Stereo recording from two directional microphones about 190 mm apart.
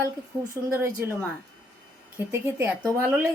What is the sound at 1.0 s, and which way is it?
Speech, 10° right (ahead or behind).